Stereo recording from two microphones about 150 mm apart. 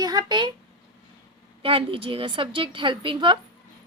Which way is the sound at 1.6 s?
35° right (ahead or behind).